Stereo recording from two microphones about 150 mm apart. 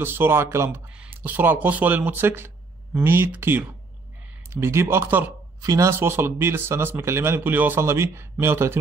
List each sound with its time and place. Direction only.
0.0 s speech: 15° right (ahead or behind)